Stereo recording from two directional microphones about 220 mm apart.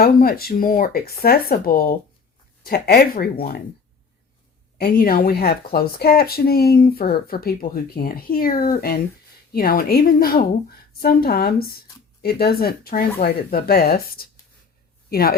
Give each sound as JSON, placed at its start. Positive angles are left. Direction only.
{"t": 0.0, "sound": "speech", "side_deg": 45}
{"t": 4.8, "sound": "speech", "side_deg": 45}